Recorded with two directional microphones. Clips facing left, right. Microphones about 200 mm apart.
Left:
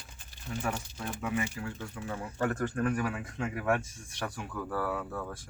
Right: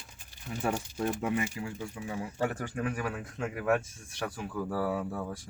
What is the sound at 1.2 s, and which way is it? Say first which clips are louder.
Speech: left 2 dB; 25° right (ahead or behind).